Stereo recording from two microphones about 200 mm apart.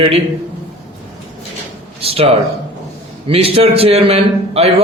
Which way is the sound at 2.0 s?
30° right (ahead or behind).